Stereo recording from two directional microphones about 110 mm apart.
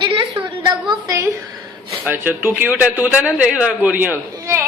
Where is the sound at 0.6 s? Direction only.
40° right (ahead or behind).